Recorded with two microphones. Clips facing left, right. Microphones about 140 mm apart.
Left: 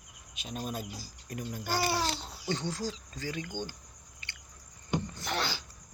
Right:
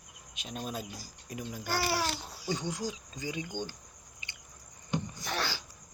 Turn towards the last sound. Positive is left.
turn(degrees=20)  # may be behind; listen again after turning